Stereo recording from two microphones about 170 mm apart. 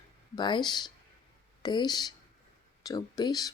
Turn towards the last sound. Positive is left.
turn(degrees=20)  # may be behind; listen again after turning